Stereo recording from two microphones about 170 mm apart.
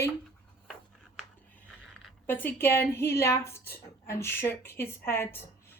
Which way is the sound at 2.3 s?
15° left (ahead or behind).